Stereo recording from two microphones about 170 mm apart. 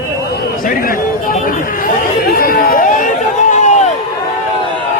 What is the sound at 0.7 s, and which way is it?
Chatter, 55° left (ahead or behind).